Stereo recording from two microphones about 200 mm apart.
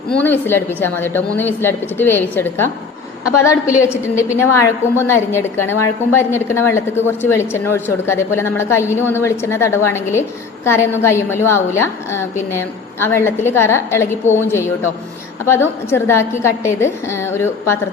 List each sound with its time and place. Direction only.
0.1 s a woman's voice: 10° left (ahead or behind)
15.4 s a woman's voice: 10° left (ahead or behind)